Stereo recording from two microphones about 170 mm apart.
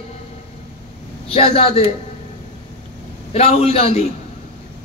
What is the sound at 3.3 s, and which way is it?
Speech, 35° left (ahead or behind).